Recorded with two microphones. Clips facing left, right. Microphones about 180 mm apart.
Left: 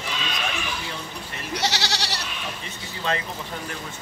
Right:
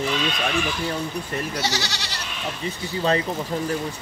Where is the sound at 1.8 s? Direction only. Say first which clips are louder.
Left 2 dB; 75° left (ahead or behind).